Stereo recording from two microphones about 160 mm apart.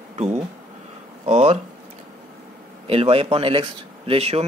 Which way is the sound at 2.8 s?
35° right (ahead or behind).